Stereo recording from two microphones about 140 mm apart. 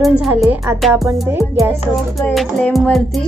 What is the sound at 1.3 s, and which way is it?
Music, 15° right (ahead or behind).